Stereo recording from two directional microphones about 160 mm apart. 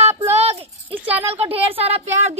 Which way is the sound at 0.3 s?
40° right (ahead or behind).